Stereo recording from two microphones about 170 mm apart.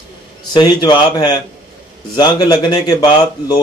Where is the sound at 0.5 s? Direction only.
25° left (ahead or behind).